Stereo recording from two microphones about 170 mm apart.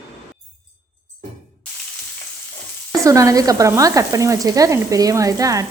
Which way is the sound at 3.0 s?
20° right (ahead or behind).